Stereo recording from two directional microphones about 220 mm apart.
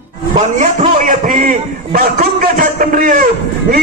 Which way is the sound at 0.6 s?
35° right (ahead or behind).